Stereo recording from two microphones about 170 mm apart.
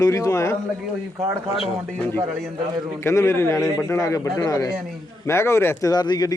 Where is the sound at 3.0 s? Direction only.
15° left (ahead or behind).